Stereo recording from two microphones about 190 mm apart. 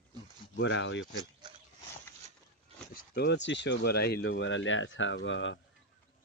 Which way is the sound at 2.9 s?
50° left (ahead or behind).